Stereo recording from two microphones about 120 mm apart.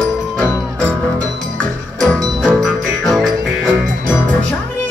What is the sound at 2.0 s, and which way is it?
Music, 5° left (ahead or behind).